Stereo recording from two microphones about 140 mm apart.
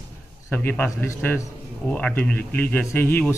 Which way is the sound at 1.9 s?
10° left (ahead or behind).